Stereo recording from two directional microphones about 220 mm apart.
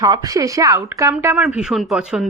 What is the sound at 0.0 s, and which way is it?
A man's voice, 15° right (ahead or behind).